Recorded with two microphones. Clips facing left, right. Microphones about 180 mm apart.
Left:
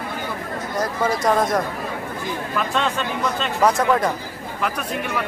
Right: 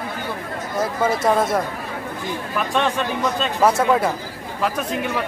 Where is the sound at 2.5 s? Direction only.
15° right (ahead or behind).